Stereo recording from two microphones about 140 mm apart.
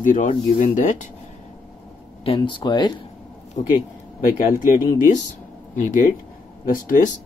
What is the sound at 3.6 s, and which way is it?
Speech, 55° left (ahead or behind).